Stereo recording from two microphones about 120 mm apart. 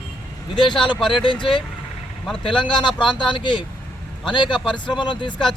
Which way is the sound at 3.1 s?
40° left (ahead or behind).